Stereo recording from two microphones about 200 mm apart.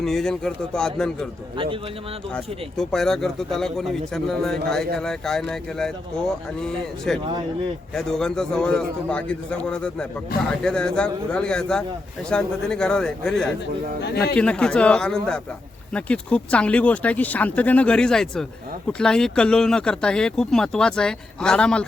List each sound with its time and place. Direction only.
0.0 s speech: centre (ahead or behind)
1.5 s a man's voice: 25° right (ahead or behind)
2.3 s speech: 5° left (ahead or behind)